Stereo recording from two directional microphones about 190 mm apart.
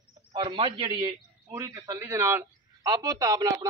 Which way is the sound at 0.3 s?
25° right (ahead or behind).